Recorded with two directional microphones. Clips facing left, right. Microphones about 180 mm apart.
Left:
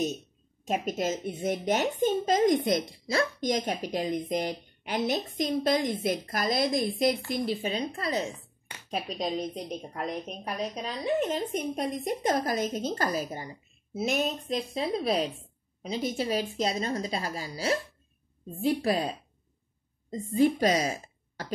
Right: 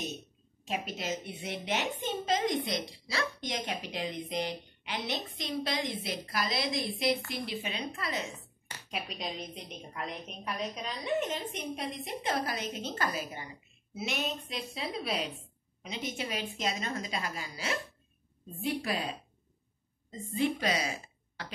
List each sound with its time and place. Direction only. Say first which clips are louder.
0.7 s a woman's voice: left 6 dB; 45° left (ahead or behind)
18.8 s a woman's voice: left 7 dB; 40° left (ahead or behind)